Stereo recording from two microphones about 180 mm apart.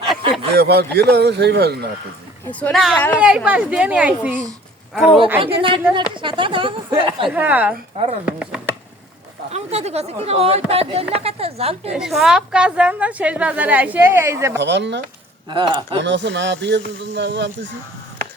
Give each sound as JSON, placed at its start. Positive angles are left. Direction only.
{"t": 0.5, "sound": "speech", "side_deg": -65}
{"t": 2.5, "sound": "speech", "side_deg": 10}
{"t": 5.4, "sound": "a woman's voice", "side_deg": -30}
{"t": 7.3, "sound": "a woman's voice", "side_deg": -10}
{"t": 9.5, "sound": "speech", "side_deg": -35}
{"t": 11.9, "sound": "a woman's voice", "side_deg": -5}
{"t": 14.6, "sound": "speech", "side_deg": -75}
{"t": 15.4, "sound": "a woman's voice", "side_deg": -25}
{"t": 16.0, "sound": "speech", "side_deg": -80}